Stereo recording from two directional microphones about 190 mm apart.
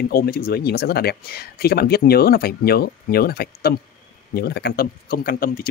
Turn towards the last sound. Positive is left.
turn(degrees=50)  # may be behind; listen again after turning